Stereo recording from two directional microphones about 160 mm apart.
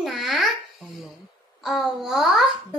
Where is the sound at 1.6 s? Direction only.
Centre (ahead or behind).